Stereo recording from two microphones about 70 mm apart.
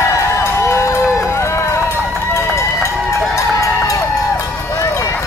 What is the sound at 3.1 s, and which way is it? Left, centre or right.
Run, left.